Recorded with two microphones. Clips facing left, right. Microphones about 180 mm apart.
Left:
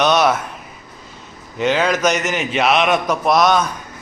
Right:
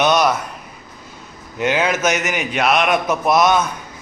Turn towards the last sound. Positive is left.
turn(degrees=-5)  # may be behind; listen again after turning